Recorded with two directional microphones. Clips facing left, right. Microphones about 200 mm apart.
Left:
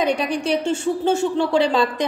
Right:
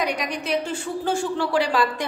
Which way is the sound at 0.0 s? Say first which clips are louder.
Left 6 dB; 30° left (ahead or behind).